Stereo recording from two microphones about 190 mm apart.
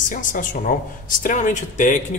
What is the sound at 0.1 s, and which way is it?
Speech, 45° left (ahead or behind).